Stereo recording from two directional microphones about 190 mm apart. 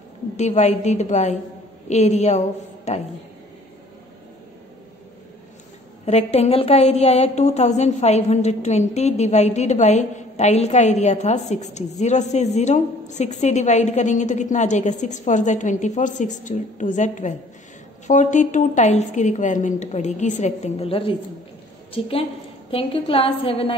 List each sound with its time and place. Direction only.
0.4 s a woman's voice: 35° left (ahead or behind)
6.0 s a woman's voice: 35° left (ahead or behind)